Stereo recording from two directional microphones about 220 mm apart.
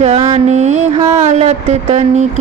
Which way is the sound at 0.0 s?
25° right (ahead or behind).